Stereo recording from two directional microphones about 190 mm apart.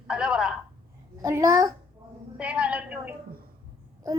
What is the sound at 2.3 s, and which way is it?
Speech, 5° right (ahead or behind).